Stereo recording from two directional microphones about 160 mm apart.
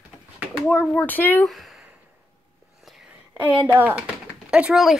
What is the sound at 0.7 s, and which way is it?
Speech, 10° left (ahead or behind).